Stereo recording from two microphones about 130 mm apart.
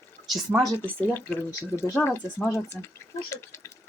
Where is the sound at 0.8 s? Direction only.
15° left (ahead or behind).